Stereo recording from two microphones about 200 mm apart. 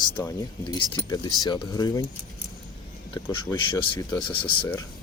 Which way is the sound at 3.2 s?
20° left (ahead or behind).